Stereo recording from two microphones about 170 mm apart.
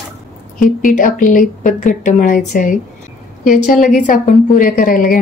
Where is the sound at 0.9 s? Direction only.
50° left (ahead or behind).